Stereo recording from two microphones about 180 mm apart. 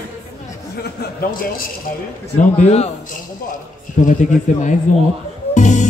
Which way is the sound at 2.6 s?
35° left (ahead or behind).